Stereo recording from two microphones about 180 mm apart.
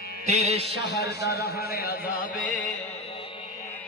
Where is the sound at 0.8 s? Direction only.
70° left (ahead or behind).